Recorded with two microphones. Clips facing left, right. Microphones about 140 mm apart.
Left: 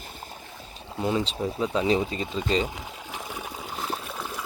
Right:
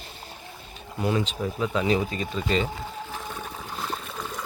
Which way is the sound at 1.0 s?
25° left (ahead or behind).